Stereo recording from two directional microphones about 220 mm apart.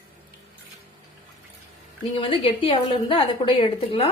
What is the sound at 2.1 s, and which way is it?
A woman's voice, 25° left (ahead or behind).